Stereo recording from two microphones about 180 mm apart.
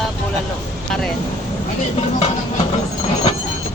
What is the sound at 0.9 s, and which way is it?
Speech, centre (ahead or behind).